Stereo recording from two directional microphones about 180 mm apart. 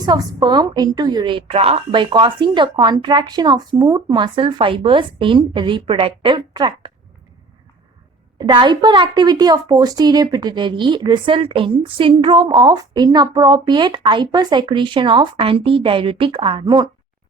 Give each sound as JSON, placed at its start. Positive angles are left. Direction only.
{"t": 0.0, "sound": "a woman's voice", "side_deg": -20}
{"t": 8.4, "sound": "a woman's voice", "side_deg": -25}